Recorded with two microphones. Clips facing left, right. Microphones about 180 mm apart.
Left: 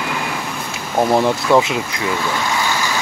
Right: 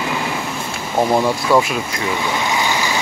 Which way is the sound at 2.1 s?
15° right (ahead or behind).